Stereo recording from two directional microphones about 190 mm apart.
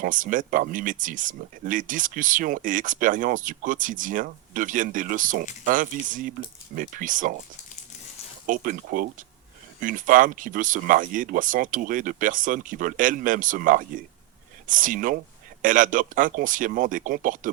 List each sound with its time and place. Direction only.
0.0 s speech: 45° right (ahead or behind)
8.4 s speech: 45° right (ahead or behind)